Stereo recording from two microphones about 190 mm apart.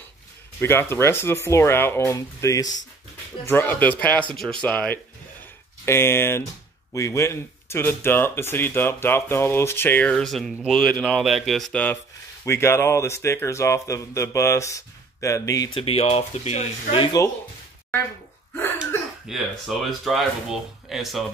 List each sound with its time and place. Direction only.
0.6 s speech: 15° left (ahead or behind)
19.2 s speech: centre (ahead or behind)